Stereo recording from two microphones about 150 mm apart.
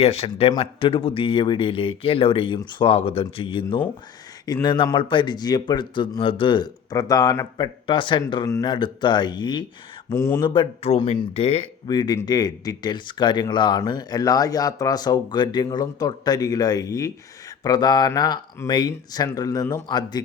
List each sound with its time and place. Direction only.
0.0 s speech: 45° left (ahead or behind)
10.1 s speech: 15° left (ahead or behind)
10.4 s speech: 35° left (ahead or behind)
11.9 s speech: 30° left (ahead or behind)